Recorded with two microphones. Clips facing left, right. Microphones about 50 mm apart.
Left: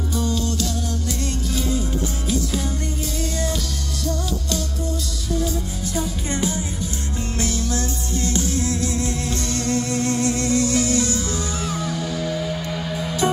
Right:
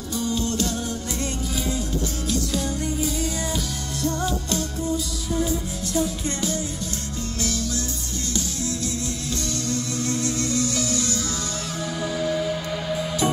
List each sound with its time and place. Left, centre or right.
0.3 s music: right
4.0 s music: right
6.3 s music: centre
7.3 s music: left
11.6 s music: centre
11.9 s music: centre